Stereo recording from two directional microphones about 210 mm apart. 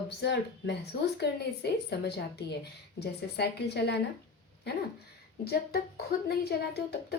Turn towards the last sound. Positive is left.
turn(degrees=50)  # may be behind; listen again after turning